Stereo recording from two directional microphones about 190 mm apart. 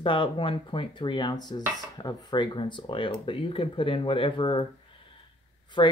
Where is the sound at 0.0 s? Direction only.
25° left (ahead or behind).